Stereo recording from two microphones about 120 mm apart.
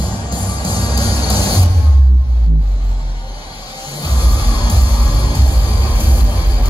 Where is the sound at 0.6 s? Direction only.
35° left (ahead or behind).